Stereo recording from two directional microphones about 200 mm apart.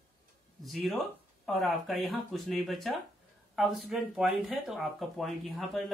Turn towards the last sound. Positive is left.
turn(degrees=0)  # may be behind; listen again after turning